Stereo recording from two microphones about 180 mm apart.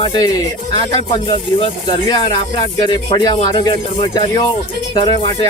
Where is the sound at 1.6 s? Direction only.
25° left (ahead or behind).